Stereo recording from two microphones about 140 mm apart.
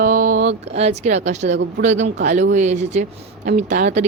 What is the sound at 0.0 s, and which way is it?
Speech, 75° right (ahead or behind).